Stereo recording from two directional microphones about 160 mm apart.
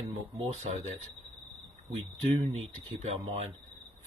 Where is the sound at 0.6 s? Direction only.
45° right (ahead or behind).